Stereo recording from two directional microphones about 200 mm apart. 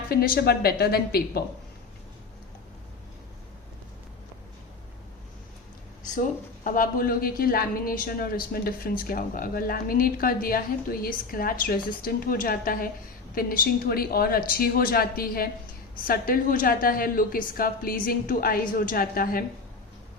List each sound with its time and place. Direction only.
0.1 s a woman's voice: 50° left (ahead or behind)
6.7 s a woman's voice: 45° left (ahead or behind)